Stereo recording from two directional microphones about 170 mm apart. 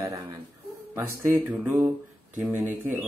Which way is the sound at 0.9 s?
10° right (ahead or behind).